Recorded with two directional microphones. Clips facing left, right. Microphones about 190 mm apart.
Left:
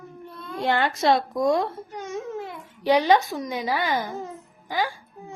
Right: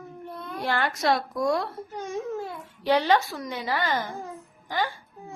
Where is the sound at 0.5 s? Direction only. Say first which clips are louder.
Left 4 dB; 25° left (ahead or behind).